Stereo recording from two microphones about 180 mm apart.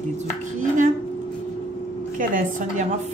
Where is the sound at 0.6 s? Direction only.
45° right (ahead or behind).